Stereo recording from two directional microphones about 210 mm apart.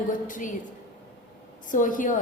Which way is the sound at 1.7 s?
40° left (ahead or behind).